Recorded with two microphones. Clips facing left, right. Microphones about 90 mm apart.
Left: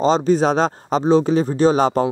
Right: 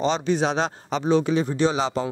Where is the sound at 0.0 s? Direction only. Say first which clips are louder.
Left 6 dB; 40° left (ahead or behind).